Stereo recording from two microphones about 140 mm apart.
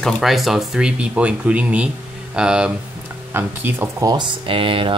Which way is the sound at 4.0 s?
30° right (ahead or behind).